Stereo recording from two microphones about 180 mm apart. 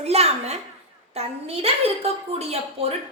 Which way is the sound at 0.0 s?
35° right (ahead or behind).